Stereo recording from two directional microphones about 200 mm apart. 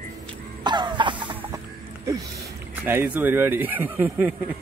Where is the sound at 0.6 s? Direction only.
20° right (ahead or behind).